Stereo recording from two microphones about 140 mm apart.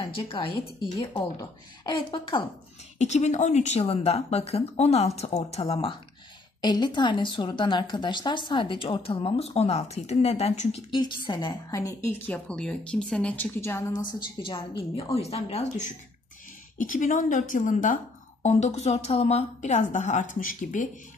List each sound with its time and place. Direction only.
0.0 s a woman's voice: 35° left (ahead or behind)
3.0 s a woman's voice: 55° left (ahead or behind)
10.9 s a woman's voice: 35° left (ahead or behind)
11.7 s speech: 20° left (ahead or behind)
12.3 s speech: 5° left (ahead or behind)
13.6 s speech: 20° left (ahead or behind)
15.1 s a woman's voice: 45° left (ahead or behind)
16.7 s a woman's voice: 70° left (ahead or behind)
18.4 s a woman's voice: 55° left (ahead or behind); by 20.9 s 70° left (ahead or behind)